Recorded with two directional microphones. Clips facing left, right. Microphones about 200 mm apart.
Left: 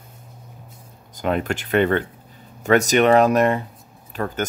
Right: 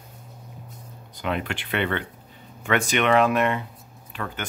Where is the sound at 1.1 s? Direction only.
45° left (ahead or behind).